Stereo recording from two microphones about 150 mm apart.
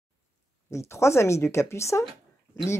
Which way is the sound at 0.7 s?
20° left (ahead or behind).